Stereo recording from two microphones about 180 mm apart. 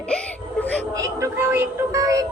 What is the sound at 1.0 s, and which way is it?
Speech, 15° right (ahead or behind).